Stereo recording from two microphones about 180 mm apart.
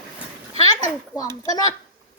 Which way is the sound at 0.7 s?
25° left (ahead or behind).